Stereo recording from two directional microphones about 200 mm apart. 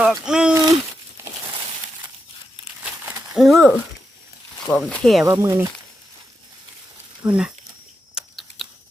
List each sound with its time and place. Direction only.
0.0 s speech: 5° right (ahead or behind)
0.5 s a sound: 15° right (ahead or behind)
1.2 s crushing: 10° right (ahead or behind)
3.3 s speech: centre (ahead or behind)
5.2 s speech: 15° right (ahead or behind)
7.2 s speech: 5° right (ahead or behind)
8.1 s chewing: centre (ahead or behind)